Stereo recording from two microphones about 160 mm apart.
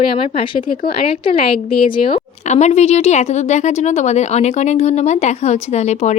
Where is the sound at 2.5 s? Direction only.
45° left (ahead or behind).